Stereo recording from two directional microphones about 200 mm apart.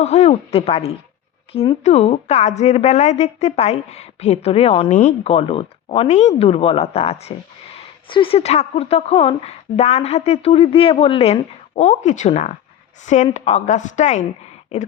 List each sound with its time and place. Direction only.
0.0 s a woman's voice: 35° left (ahead or behind)